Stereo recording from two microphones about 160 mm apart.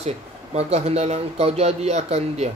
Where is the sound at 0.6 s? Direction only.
40° right (ahead or behind).